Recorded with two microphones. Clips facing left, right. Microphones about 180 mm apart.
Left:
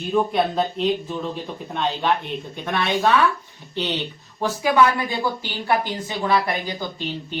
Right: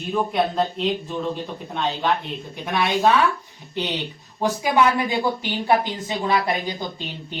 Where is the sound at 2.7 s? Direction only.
10° right (ahead or behind).